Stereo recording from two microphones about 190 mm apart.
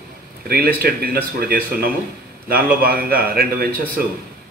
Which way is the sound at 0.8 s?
55° right (ahead or behind).